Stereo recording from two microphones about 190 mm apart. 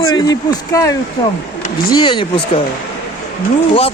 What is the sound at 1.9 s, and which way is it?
Speech, 25° left (ahead or behind).